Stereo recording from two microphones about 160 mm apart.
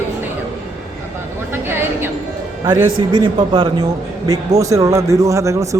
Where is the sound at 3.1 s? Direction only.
30° right (ahead or behind).